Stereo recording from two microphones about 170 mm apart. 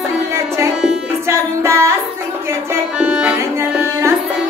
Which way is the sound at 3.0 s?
5° right (ahead or behind).